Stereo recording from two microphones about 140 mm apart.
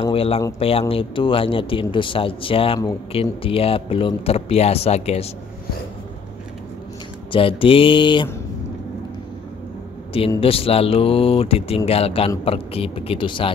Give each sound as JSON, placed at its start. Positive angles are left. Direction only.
{"t": 0.1, "sound": "speech", "side_deg": 40}
{"t": 7.3, "sound": "speech", "side_deg": 40}
{"t": 10.4, "sound": "speech", "side_deg": 40}